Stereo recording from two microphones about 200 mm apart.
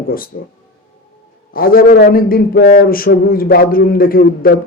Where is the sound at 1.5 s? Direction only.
45° left (ahead or behind).